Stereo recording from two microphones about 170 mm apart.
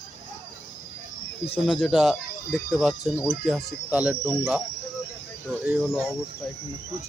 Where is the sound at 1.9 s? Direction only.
Centre (ahead or behind).